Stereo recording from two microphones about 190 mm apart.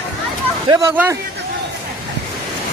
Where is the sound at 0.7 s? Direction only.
15° right (ahead or behind).